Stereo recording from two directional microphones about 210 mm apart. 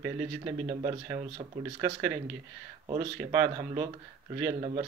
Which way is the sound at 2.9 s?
20° right (ahead or behind).